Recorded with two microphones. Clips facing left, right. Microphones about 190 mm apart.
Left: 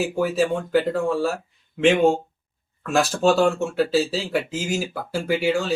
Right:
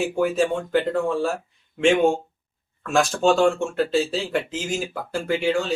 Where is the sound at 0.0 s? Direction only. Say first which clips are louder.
Even; 5° left (ahead or behind).